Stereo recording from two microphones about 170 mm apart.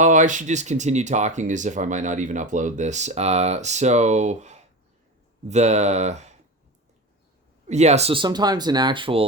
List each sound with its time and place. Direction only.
0.0 s speech: 45° right (ahead or behind)
7.7 s speech: 40° right (ahead or behind)